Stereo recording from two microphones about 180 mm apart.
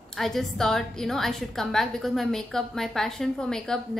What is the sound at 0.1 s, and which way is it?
A woman's voice, centre (ahead or behind).